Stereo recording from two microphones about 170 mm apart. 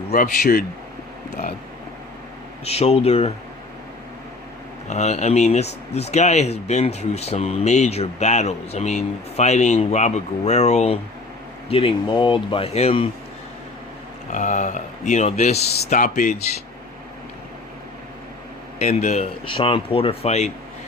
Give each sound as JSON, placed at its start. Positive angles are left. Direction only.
{"t": 0.1, "sound": "speech", "side_deg": 55}
{"t": 2.6, "sound": "speech", "side_deg": 40}
{"t": 4.9, "sound": "speech", "side_deg": 40}
{"t": 14.3, "sound": "speech", "side_deg": 45}
{"t": 18.8, "sound": "speech", "side_deg": 40}